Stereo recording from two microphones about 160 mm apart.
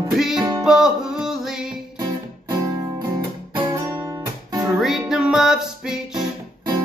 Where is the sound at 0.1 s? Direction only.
5° right (ahead or behind).